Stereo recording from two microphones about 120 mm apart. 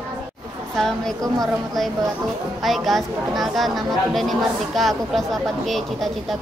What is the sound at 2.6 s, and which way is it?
Speech, centre (ahead or behind).